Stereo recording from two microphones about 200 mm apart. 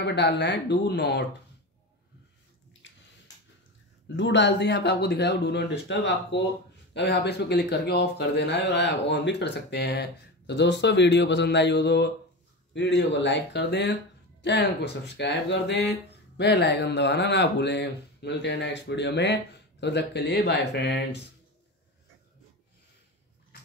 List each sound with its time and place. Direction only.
0.0 s speech: 55° left (ahead or behind)
4.2 s speech: 65° left (ahead or behind)